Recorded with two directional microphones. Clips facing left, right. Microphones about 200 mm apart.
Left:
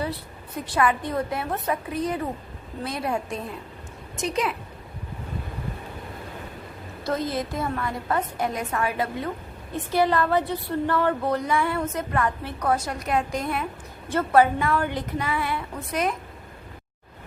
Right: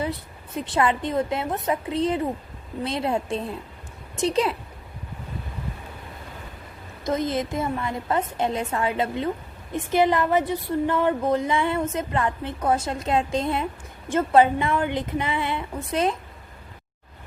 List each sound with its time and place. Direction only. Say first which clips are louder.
0.0 s a woman's voice: right 1 dB; 20° right (ahead or behind)
7.0 s a woman's voice: right 2 dB; 20° right (ahead or behind)